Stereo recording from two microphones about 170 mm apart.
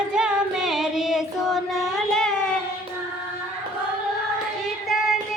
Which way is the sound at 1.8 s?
Centre (ahead or behind).